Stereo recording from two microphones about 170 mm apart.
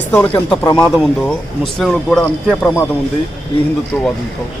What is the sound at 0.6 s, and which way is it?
Speech, 20° left (ahead or behind).